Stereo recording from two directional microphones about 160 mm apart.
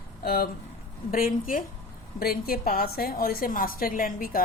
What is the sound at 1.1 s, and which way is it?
A woman's voice, 60° left (ahead or behind).